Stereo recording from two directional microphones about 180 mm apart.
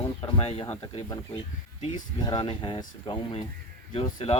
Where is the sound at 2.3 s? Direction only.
30° left (ahead or behind).